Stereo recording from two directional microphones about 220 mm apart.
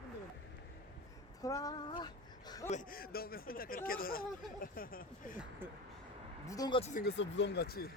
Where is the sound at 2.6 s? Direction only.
35° left (ahead or behind).